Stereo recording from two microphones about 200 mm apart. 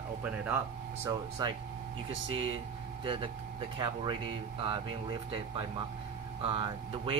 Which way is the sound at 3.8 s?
25° right (ahead or behind).